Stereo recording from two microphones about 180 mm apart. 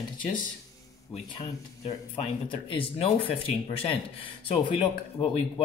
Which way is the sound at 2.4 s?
30° left (ahead or behind).